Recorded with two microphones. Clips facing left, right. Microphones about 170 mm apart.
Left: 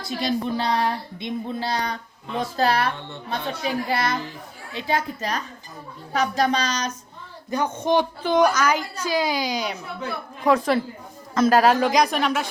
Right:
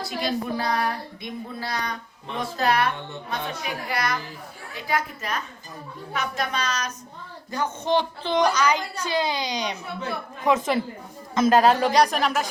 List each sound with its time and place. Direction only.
0.0 s a child's voice: 20° left (ahead or behind)
7.5 s a woman's voice: 15° left (ahead or behind); by 12.5 s centre (ahead or behind)